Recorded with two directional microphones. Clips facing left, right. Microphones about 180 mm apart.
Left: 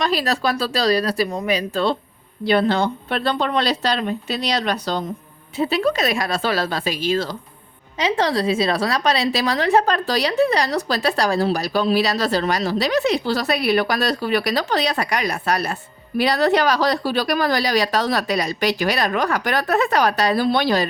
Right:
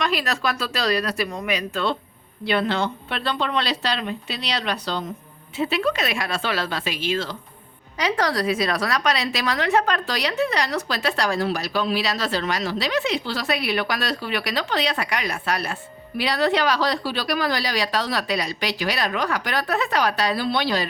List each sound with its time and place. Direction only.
0.0 s a woman's voice: 35° left (ahead or behind)
7.9 s a woman's voice: 25° left (ahead or behind); by 20.8 s 45° left (ahead or behind)